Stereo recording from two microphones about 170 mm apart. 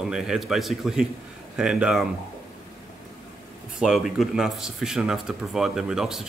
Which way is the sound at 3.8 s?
Centre (ahead or behind).